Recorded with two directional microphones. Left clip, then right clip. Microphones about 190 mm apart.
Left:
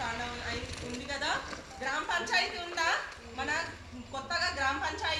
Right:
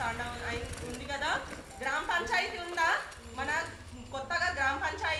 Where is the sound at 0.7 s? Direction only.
20° left (ahead or behind).